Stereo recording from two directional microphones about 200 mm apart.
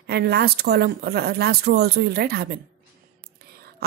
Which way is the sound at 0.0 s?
55° right (ahead or behind).